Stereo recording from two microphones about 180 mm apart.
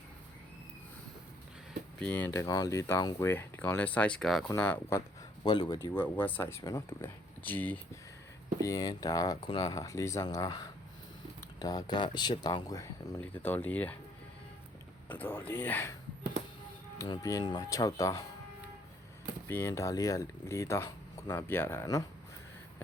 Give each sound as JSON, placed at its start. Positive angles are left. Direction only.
{"t": 2.0, "sound": "speech", "side_deg": 10}
{"t": 5.9, "sound": "speech", "side_deg": 10}
{"t": 15.1, "sound": "speech", "side_deg": 10}
{"t": 17.0, "sound": "speech", "side_deg": 20}
{"t": 19.5, "sound": "speech", "side_deg": 15}